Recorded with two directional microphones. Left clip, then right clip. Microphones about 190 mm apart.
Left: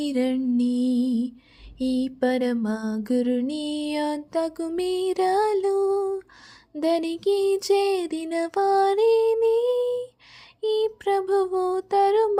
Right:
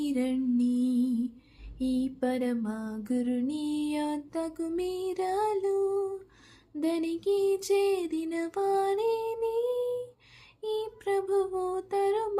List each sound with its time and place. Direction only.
0.0 s music: 40° left (ahead or behind)
1.8 s mantra: 40° left (ahead or behind)